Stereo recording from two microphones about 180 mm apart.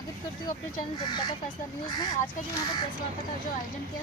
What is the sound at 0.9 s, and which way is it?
Speech, 20° left (ahead or behind).